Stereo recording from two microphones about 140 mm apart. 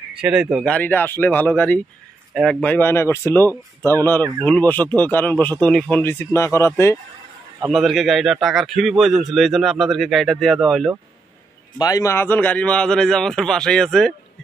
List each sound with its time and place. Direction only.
0.2 s a man's voice: 5° right (ahead or behind)
0.7 s a man's voice: 10° left (ahead or behind)
2.7 s speech: 15° left (ahead or behind)
7.7 s a man's voice: centre (ahead or behind)
11.8 s a man's voice: 25° left (ahead or behind); by 14.1 s 5° left (ahead or behind)